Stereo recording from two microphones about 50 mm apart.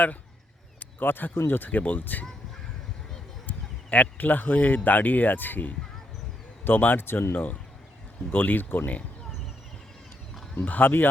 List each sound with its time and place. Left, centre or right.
0.8 s speech: left
3.4 s speech: left
7.0 s speech: left
8.3 s speech: left
10.6 s speech: left